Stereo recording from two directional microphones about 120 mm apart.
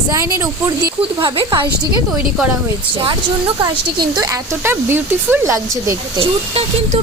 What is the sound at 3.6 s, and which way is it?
Speech, 35° right (ahead or behind).